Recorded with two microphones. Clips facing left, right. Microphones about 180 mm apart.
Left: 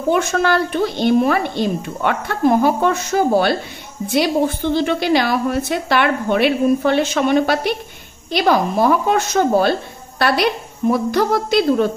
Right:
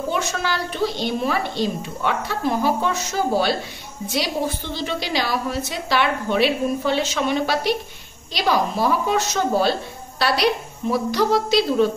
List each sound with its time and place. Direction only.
0.1 s a woman's voice: 55° left (ahead or behind)